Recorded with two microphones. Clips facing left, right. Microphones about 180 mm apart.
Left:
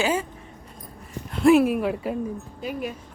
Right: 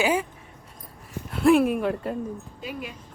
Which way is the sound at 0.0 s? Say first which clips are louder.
Right 1 dB; 15° right (ahead or behind).